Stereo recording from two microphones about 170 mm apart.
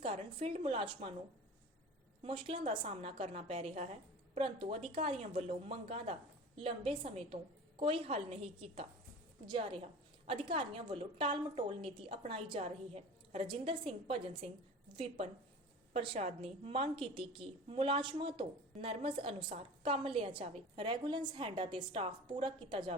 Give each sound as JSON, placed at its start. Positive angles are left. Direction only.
{"t": 0.0, "sound": "a woman's voice", "side_deg": -35}
{"t": 2.2, "sound": "a woman's voice", "side_deg": -30}